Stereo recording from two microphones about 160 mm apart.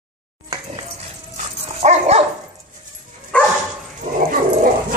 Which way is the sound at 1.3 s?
45° right (ahead or behind).